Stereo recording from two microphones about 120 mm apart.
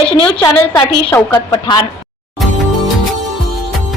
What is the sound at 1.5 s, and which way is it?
Speech, 35° left (ahead or behind).